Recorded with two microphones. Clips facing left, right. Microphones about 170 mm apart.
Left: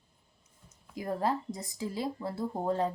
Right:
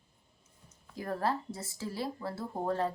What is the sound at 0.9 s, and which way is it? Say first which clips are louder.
Speech: left 2 dB; 15° left (ahead or behind).